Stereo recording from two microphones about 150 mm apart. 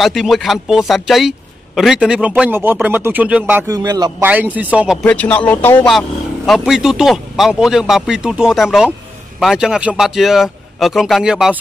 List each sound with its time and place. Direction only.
0.0 s speech: centre (ahead or behind)
3.6 s a man's voice: 25° right (ahead or behind)
4.2 s speech: 10° right (ahead or behind)
5.0 s speech: 10° left (ahead or behind)
5.9 s speech: centre (ahead or behind)